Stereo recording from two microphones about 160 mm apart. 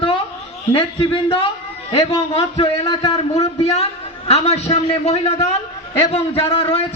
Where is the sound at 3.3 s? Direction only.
40° left (ahead or behind).